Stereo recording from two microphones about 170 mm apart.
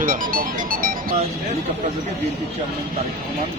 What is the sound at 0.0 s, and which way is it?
Music, 55° right (ahead or behind).